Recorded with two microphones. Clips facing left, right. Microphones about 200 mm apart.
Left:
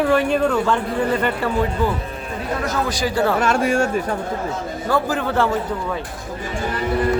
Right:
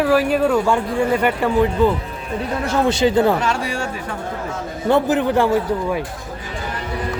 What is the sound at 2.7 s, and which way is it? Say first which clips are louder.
Speech: right 8 dB; 25° right (ahead or behind).